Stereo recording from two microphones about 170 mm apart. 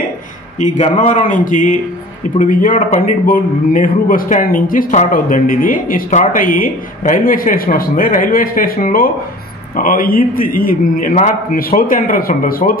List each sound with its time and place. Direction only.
0.6 s a man's voice: 45° left (ahead or behind)